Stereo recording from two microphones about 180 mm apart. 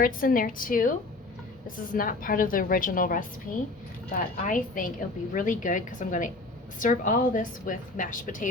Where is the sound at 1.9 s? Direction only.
50° left (ahead or behind).